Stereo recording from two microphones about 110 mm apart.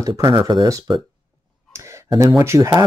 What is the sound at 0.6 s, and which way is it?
Speech, 30° right (ahead or behind).